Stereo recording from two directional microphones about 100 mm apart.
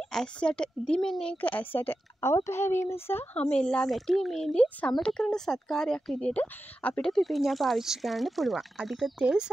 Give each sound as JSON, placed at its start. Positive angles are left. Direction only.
{"t": 0.1, "sound": "speech", "side_deg": 10}
{"t": 1.4, "sound": "speech", "side_deg": 15}